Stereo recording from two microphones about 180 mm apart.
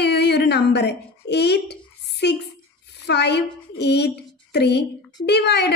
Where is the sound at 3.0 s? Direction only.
70° left (ahead or behind).